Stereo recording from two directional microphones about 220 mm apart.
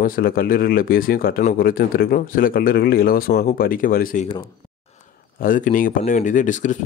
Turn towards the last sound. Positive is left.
turn(degrees=35)  # may be behind; listen again after turning